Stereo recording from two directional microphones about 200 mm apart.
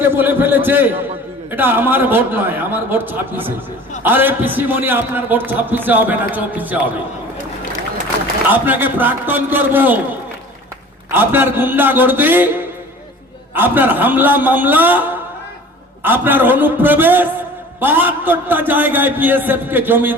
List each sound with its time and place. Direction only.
0.0 s a man's voice: 10° right (ahead or behind)
8.4 s a man's voice: 10° right (ahead or behind)
11.1 s a man's voice: 10° right (ahead or behind)
16.0 s a man's voice: 10° right (ahead or behind)